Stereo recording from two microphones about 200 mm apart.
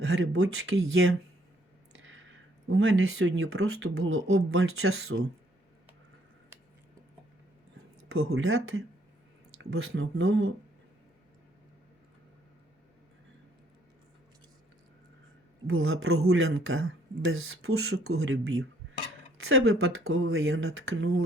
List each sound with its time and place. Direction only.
0.0 s speech: 85° right
8.0 s speech: 90° right
15.6 s speech: 90° right